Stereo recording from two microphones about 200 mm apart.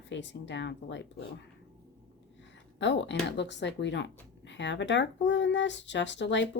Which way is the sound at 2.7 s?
65° left (ahead or behind).